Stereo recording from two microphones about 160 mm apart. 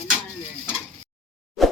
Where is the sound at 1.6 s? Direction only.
Centre (ahead or behind).